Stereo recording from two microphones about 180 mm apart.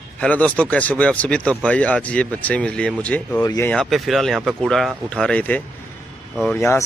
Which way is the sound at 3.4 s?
20° left (ahead or behind).